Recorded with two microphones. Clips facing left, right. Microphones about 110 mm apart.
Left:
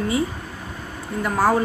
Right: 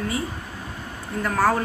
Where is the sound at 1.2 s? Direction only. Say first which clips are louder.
Left 2 dB; 10° left (ahead or behind).